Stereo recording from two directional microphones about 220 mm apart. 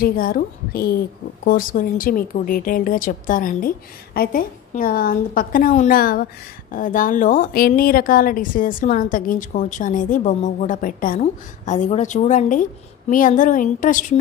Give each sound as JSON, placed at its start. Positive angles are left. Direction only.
{"t": 0.0, "sound": "a woman's voice", "side_deg": 40}